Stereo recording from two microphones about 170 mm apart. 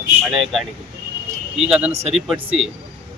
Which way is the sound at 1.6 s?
5° right (ahead or behind).